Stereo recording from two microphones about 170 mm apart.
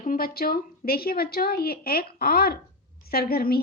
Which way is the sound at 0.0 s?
55° left (ahead or behind).